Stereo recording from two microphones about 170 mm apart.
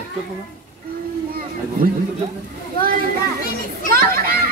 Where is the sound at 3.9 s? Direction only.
60° right (ahead or behind).